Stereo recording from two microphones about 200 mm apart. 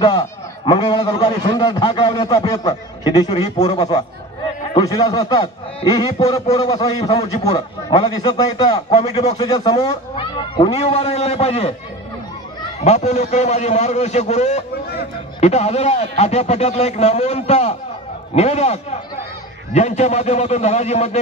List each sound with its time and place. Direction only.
0.0 s a man's voice: 25° left (ahead or behind)
12.8 s speech: 35° left (ahead or behind)